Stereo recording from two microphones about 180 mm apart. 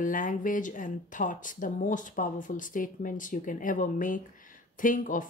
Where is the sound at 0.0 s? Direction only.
50° left (ahead or behind).